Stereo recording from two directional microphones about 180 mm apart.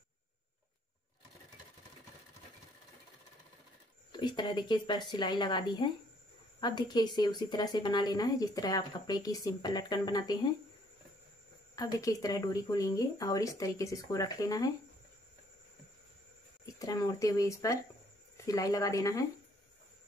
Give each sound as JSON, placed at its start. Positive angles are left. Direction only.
{"t": 4.1, "sound": "a woman's voice", "side_deg": 25}
{"t": 11.7, "sound": "a woman's voice", "side_deg": 20}
{"t": 16.8, "sound": "a woman's voice", "side_deg": 20}